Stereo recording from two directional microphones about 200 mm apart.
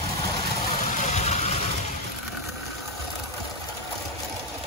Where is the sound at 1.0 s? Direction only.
35° left (ahead or behind).